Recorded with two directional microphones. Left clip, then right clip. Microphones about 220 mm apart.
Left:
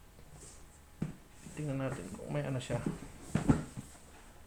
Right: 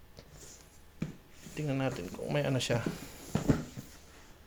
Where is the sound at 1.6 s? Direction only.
50° right (ahead or behind).